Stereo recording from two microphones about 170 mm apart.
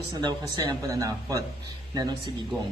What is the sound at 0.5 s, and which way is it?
Speech, 25° right (ahead or behind).